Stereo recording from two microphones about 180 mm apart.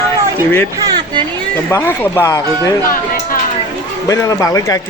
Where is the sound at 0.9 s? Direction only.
25° right (ahead or behind).